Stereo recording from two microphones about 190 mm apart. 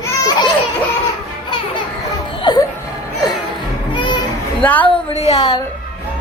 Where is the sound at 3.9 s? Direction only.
25° left (ahead or behind).